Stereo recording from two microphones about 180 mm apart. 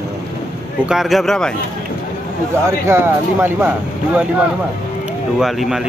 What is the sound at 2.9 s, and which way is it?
Speech, 15° right (ahead or behind).